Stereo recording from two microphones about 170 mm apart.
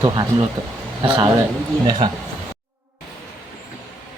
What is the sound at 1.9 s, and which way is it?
Speech, 25° right (ahead or behind).